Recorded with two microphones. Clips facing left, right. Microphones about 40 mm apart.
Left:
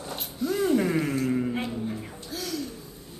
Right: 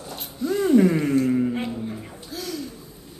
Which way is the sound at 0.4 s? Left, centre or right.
Centre.